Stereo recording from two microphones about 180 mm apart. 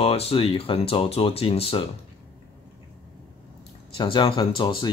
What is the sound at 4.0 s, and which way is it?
Speech, 30° left (ahead or behind).